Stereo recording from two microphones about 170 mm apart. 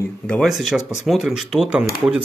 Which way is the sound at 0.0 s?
5° left (ahead or behind).